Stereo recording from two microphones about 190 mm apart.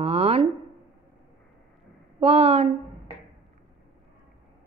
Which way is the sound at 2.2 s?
30° right (ahead or behind).